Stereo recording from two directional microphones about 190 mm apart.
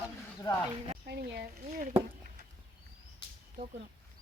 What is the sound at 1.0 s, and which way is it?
Speech, 55° right (ahead or behind).